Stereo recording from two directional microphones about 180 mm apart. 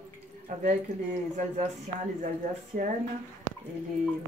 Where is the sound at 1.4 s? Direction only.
40° right (ahead or behind).